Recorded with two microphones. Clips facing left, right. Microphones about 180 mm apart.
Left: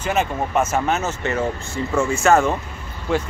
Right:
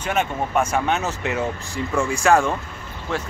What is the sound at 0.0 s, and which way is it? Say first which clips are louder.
Speech: left 2 dB; 5° left (ahead or behind).